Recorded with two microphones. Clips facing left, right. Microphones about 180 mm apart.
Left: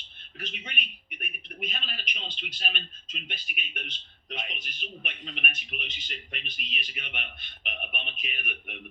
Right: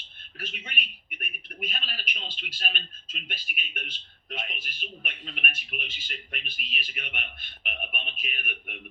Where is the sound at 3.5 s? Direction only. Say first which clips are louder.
Right 1 dB; 50° right (ahead or behind).